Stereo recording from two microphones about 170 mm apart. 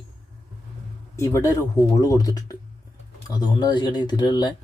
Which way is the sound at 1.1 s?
20° left (ahead or behind).